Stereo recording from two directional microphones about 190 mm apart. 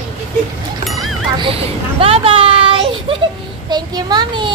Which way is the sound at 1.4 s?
30° right (ahead or behind).